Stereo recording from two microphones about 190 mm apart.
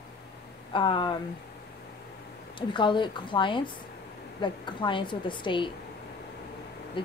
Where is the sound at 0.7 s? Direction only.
25° left (ahead or behind).